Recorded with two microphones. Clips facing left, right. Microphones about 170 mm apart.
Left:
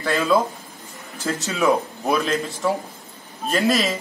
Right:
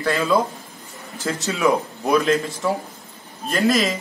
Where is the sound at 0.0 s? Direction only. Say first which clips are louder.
Even; centre (ahead or behind).